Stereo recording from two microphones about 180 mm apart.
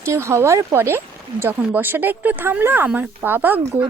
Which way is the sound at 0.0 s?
15° right (ahead or behind).